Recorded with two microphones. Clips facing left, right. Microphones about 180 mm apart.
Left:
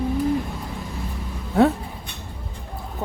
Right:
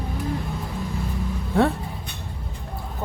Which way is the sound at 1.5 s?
5° left (ahead or behind).